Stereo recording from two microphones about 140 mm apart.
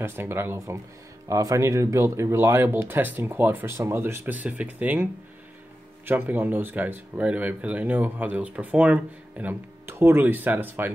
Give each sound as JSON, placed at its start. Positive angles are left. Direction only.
{"t": 0.0, "sound": "speech", "side_deg": -15}
{"t": 6.0, "sound": "speech", "side_deg": -15}